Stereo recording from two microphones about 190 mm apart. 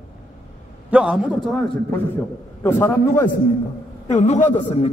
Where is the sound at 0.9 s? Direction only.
5° right (ahead or behind).